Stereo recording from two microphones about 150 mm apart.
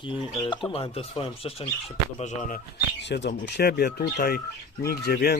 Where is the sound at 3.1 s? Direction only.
90° left.